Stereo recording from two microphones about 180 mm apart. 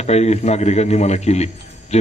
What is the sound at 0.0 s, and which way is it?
A man's voice, 35° left (ahead or behind).